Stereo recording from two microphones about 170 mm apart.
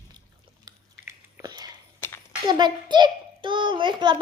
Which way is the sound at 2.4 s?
25° right (ahead or behind).